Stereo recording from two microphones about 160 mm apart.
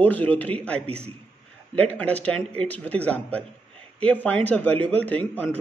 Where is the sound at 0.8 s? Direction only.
40° right (ahead or behind).